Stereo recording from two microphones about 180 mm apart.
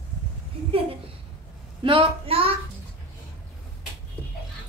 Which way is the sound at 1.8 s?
30° right (ahead or behind).